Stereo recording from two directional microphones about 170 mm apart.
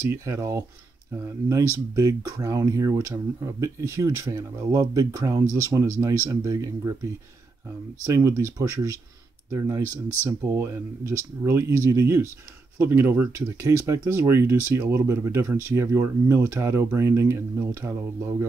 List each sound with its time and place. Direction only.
0.1 s speech: 15° right (ahead or behind)
8.1 s speech: 15° right (ahead or behind)